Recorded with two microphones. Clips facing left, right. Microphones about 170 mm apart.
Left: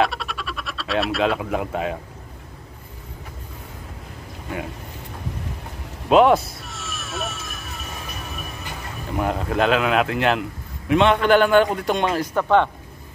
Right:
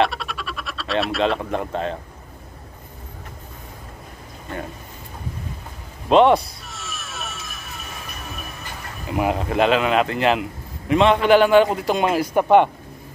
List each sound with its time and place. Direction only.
0.0 s frog: centre (ahead or behind)
6.0 s a sound: 5° left (ahead or behind)
9.1 s a man's voice: 5° right (ahead or behind)